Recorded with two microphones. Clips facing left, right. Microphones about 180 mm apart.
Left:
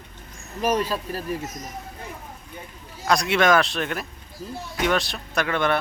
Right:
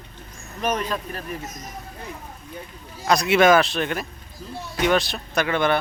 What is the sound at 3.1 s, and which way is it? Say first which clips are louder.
Speech: right 3 dB; 5° right (ahead or behind).